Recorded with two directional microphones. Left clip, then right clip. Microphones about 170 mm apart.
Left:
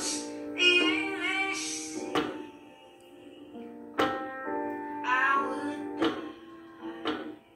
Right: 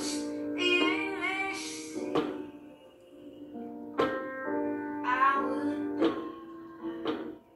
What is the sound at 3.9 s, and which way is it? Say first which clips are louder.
Music: left 1 dB; 15° left (ahead or behind).